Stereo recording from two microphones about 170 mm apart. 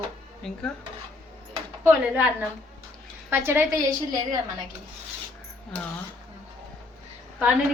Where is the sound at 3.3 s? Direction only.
15° right (ahead or behind).